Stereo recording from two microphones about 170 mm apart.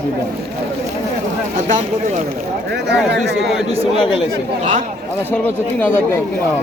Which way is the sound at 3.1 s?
90° right.